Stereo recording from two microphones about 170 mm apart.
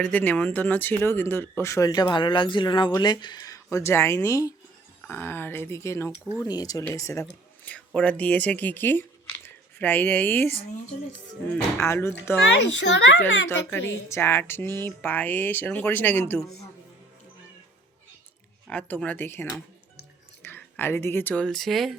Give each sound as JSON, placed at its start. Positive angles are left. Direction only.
{"t": 0.0, "sound": "speech", "side_deg": 10}
{"t": 11.5, "sound": "speech", "side_deg": 15}
{"t": 12.9, "sound": "a child's voice", "side_deg": 90}
{"t": 13.5, "sound": "speech", "side_deg": 15}
{"t": 18.7, "sound": "speech", "side_deg": 10}